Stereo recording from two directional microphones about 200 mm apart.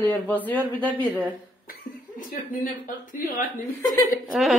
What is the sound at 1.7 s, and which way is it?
Cough, 45° left (ahead or behind).